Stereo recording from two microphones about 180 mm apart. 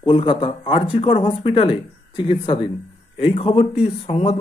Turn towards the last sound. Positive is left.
turn(degrees=35)  # may be behind; listen again after turning